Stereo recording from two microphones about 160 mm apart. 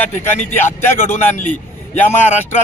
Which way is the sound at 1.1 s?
55° left (ahead or behind).